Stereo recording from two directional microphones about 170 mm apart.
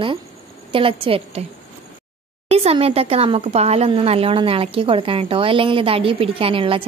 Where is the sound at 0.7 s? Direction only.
30° right (ahead or behind).